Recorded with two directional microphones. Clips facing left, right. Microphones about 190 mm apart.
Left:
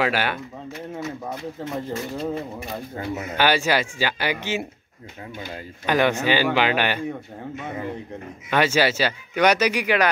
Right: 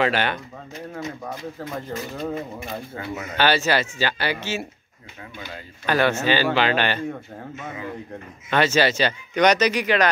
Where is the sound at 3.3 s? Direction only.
10° left (ahead or behind).